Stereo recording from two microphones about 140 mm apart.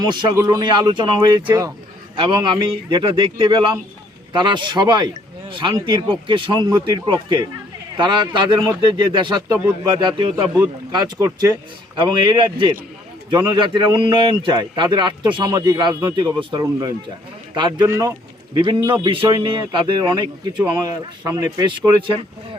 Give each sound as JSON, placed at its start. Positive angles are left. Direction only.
{"t": 0.3, "sound": "speech", "side_deg": -25}
{"t": 17.8, "sound": "speech", "side_deg": -20}